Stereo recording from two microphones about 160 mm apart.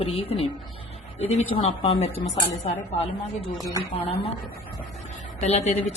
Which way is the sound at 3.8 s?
40° left (ahead or behind).